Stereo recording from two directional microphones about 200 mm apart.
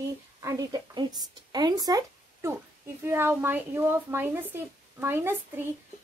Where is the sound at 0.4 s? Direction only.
15° right (ahead or behind).